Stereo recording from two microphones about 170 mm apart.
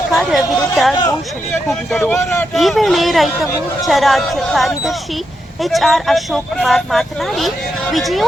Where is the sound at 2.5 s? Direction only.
Centre (ahead or behind).